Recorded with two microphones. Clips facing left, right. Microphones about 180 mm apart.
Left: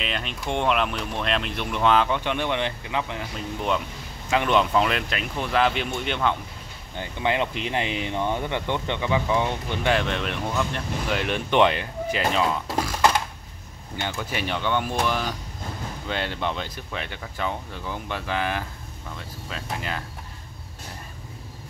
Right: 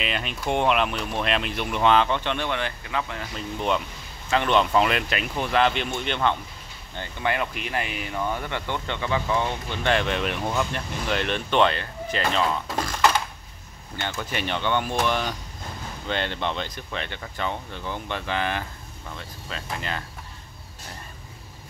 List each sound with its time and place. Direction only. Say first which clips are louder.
0.0 s speech: right 2 dB; 5° right (ahead or behind); by 3.3 s 20° left (ahead or behind)
4.3 s speech: even; 10° left (ahead or behind)
7.0 s speech: left 2 dB; 20° left (ahead or behind)
9.9 s speech: right 1 dB; 5° right (ahead or behind)
14.1 s speech: right 1 dB; 5° left (ahead or behind)